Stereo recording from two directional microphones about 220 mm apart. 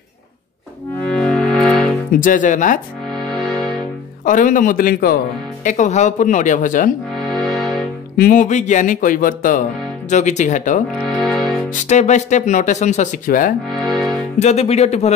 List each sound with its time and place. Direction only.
1.1 s music: 5° left (ahead or behind)
2.1 s speech: 35° left (ahead or behind)
4.2 s speech: 35° left (ahead or behind)
7.2 s music: centre (ahead or behind)
8.2 s speech: 35° left (ahead or behind)
11.0 s music: centre (ahead or behind)
11.9 s speech: 30° left (ahead or behind)
13.7 s music: centre (ahead or behind)
14.4 s speech: 30° left (ahead or behind)